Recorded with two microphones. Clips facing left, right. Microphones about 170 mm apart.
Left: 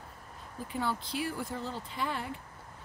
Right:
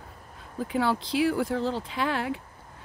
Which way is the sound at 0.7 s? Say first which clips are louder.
Right 8 dB; 90° right.